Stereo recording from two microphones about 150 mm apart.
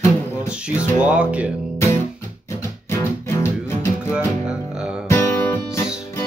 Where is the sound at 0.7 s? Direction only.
10° right (ahead or behind).